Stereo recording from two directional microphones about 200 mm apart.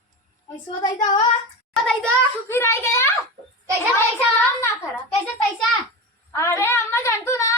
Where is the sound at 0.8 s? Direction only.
20° left (ahead or behind).